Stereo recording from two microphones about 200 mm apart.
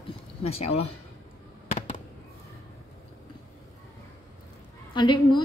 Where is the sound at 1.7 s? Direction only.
30° left (ahead or behind).